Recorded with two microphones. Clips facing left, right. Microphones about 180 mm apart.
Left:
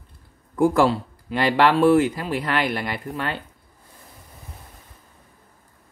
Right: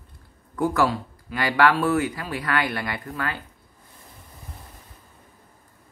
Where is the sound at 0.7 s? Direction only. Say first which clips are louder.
Left 4 dB; 25° left (ahead or behind).